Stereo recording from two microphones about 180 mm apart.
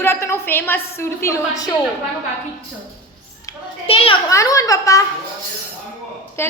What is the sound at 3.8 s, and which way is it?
Speech, 30° left (ahead or behind).